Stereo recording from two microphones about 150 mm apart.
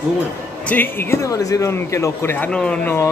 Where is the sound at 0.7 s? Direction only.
15° left (ahead or behind).